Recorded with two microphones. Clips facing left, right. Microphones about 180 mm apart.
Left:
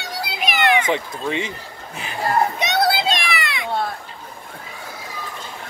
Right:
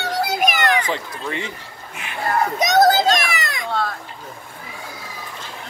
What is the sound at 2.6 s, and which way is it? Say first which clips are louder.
Children playing: right 5 dB; 40° right (ahead or behind).